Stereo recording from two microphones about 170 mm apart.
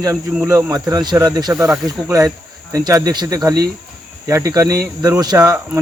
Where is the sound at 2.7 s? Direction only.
20° right (ahead or behind).